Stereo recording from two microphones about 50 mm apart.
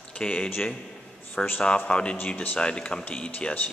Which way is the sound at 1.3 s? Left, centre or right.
Left.